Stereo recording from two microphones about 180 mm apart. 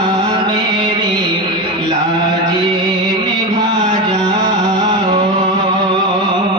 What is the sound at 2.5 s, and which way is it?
Music, 25° right (ahead or behind).